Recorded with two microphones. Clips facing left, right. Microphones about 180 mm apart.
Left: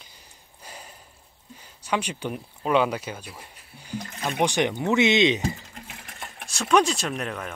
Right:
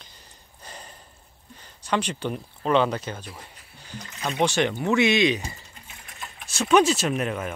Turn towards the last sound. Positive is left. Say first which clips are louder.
# right 4 dB
turn(degrees=-5)  # may be behind; listen again after turning